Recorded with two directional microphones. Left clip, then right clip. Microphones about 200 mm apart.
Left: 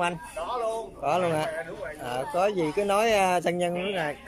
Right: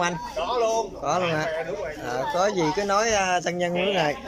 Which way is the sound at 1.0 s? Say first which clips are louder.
Left 1 dB; 15° left (ahead or behind).